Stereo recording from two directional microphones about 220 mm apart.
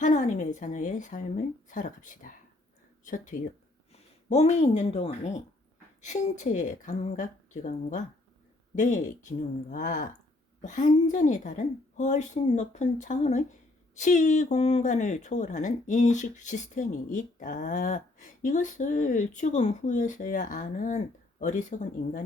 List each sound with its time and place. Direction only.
0.0 s speech: 35° left (ahead or behind)
3.3 s speech: 40° left (ahead or behind)